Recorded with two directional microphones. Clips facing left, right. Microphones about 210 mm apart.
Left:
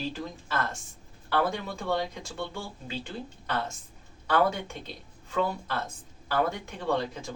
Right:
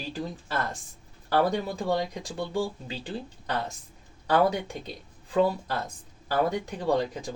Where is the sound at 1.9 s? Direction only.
15° right (ahead or behind).